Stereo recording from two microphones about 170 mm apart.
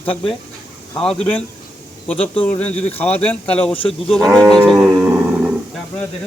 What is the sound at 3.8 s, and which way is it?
Speech, 35° left (ahead or behind).